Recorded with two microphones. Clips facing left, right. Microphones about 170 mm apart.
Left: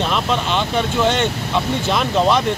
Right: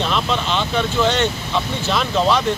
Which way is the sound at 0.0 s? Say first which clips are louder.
Left 1 dB; 10° left (ahead or behind).